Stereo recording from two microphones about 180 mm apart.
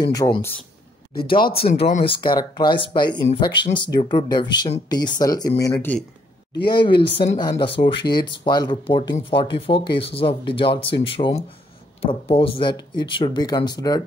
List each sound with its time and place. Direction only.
0.0 s speech: 20° left (ahead or behind)
1.4 s speech: 60° left (ahead or behind)
1.7 s speech: 40° left (ahead or behind); by 6.0 s 10° left (ahead or behind)
6.7 s speech: 25° left (ahead or behind)